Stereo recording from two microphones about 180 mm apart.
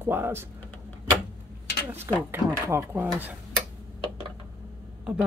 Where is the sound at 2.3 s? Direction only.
15° right (ahead or behind).